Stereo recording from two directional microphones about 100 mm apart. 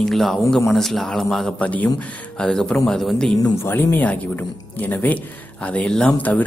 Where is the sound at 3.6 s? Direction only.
20° left (ahead or behind).